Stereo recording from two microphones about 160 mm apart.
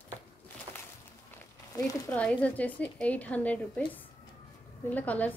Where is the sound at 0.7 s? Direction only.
30° right (ahead or behind).